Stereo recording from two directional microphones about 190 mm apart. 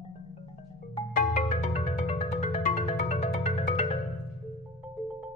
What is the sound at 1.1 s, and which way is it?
Music, 35° left (ahead or behind).